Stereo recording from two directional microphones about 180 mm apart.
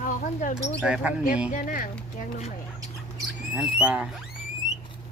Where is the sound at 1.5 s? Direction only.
45° left (ahead or behind).